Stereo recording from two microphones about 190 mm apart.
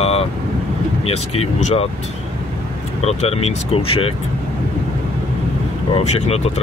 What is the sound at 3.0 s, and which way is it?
Speech, 35° left (ahead or behind).